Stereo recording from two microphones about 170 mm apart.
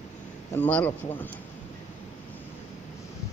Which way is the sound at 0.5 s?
10° left (ahead or behind).